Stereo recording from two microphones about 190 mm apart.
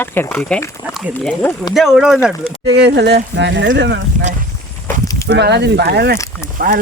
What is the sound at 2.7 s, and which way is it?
Speech, 60° right (ahead or behind).